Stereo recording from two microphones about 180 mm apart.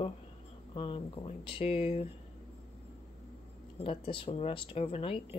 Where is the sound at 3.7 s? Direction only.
30° left (ahead or behind).